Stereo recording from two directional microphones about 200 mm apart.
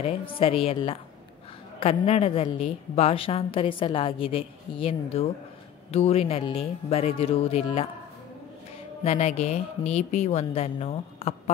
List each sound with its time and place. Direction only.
0.0 s a woman's voice: 30° left (ahead or behind)
9.0 s speech: 35° left (ahead or behind)